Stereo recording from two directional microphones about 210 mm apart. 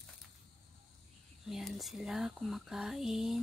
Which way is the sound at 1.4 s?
Centre (ahead or behind).